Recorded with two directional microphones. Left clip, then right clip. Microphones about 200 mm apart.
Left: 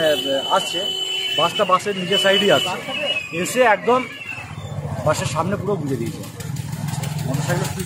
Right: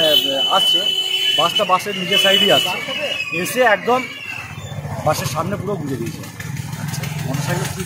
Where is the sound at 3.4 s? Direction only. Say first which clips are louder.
Right 1 dB; 25° left (ahead or behind).